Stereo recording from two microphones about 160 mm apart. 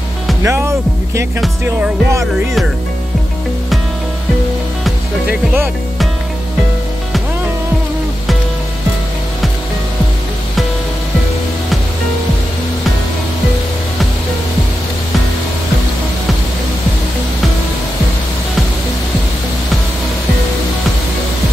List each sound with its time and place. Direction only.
0.4 s speech: 15° right (ahead or behind)